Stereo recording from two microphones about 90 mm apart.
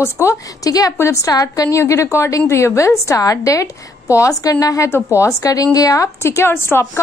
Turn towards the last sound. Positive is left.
turn(degrees=30)  # may be behind; listen again after turning